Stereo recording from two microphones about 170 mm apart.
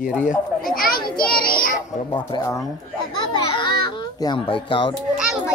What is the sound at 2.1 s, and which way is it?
Speech, 25° left (ahead or behind).